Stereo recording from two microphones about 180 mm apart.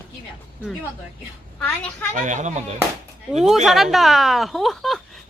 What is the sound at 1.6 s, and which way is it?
Speech, 5° left (ahead or behind).